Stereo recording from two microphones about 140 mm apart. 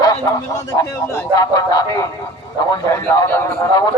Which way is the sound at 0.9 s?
20° left (ahead or behind).